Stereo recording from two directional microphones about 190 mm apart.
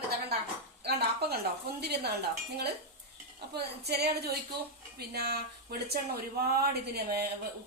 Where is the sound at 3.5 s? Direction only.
60° right (ahead or behind).